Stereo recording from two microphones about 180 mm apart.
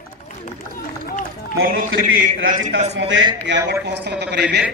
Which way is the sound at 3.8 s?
70° right (ahead or behind).